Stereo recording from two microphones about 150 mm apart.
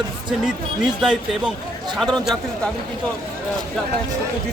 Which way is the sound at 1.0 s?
5° right (ahead or behind).